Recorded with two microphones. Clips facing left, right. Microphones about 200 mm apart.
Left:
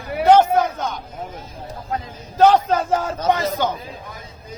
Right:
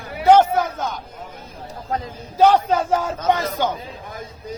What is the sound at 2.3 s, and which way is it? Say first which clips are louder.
Speech: left 1 dB; 10° right (ahead or behind).